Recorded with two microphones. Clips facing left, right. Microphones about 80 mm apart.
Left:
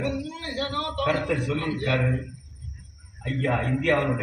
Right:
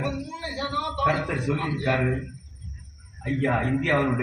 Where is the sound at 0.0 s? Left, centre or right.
Right.